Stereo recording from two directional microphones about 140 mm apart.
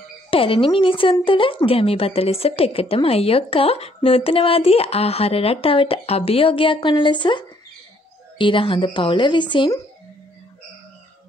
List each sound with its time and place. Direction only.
0.3 s a woman's voice: 40° left (ahead or behind)